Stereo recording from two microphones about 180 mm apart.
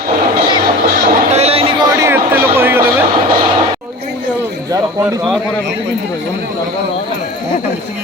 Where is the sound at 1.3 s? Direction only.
35° right (ahead or behind).